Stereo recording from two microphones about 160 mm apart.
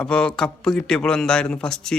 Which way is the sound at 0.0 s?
5° left (ahead or behind).